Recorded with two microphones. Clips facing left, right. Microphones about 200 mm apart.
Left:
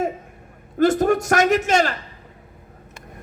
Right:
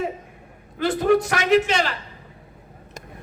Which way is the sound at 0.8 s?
45° left (ahead or behind).